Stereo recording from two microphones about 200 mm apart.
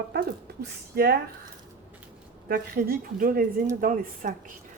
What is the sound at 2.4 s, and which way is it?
A woman's voice, 50° right (ahead or behind).